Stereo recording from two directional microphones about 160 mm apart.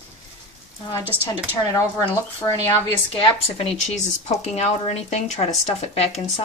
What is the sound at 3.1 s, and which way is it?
Speech, 35° left (ahead or behind).